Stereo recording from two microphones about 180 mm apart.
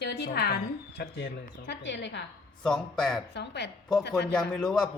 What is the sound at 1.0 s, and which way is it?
Speech, 75° left (ahead or behind).